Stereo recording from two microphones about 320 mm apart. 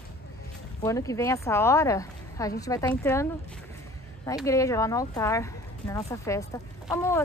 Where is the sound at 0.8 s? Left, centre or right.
Centre.